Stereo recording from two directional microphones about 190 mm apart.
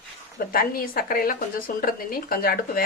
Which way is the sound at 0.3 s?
50° left (ahead or behind).